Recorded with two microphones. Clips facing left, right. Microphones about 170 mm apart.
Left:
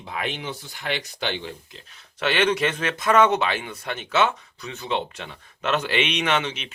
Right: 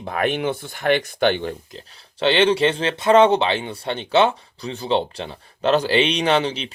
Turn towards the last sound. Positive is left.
turn(degrees=-35)  # may be behind; listen again after turning